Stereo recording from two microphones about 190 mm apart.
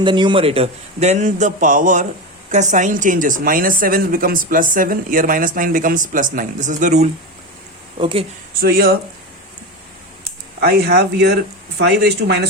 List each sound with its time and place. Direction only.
0.0 s a man's voice: 25° right (ahead or behind); by 7.1 s 40° right (ahead or behind)
7.9 s speech: 30° right (ahead or behind)
8.6 s a woman's voice: 50° right (ahead or behind)
10.6 s speech: 55° right (ahead or behind)